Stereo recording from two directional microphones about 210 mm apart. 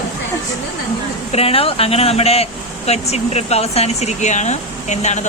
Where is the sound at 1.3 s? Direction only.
30° left (ahead or behind).